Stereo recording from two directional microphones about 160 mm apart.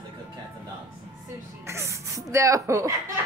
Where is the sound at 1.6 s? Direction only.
20° right (ahead or behind).